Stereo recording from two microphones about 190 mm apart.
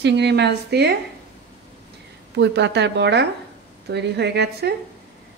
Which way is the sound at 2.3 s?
65° right (ahead or behind).